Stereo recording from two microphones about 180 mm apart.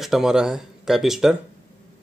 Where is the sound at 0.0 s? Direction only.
Centre (ahead or behind).